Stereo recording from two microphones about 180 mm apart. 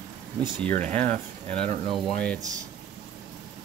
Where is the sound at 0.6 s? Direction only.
10° left (ahead or behind).